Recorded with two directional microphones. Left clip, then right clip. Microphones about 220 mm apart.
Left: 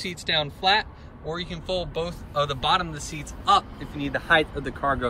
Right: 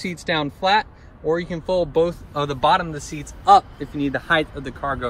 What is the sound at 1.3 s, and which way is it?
Speech, 25° right (ahead or behind).